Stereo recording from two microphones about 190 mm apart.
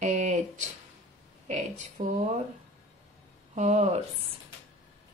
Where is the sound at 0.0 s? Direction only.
40° right (ahead or behind).